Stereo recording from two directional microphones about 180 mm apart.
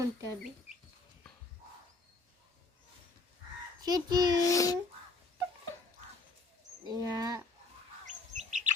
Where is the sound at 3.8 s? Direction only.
20° right (ahead or behind).